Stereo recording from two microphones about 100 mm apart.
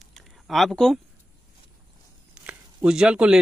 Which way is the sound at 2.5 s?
10° right (ahead or behind).